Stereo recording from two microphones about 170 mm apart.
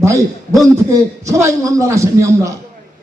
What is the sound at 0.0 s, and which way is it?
A man's voice, 20° right (ahead or behind).